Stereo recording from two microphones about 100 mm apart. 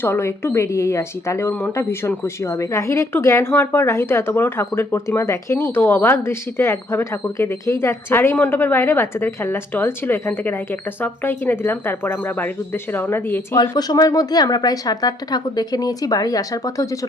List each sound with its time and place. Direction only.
0.0 s speech: 25° left (ahead or behind)
13.6 s a woman's voice: 40° left (ahead or behind)